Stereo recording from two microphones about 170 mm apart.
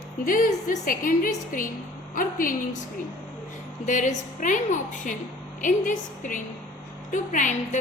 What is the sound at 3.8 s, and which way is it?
A woman's voice, 45° left (ahead or behind).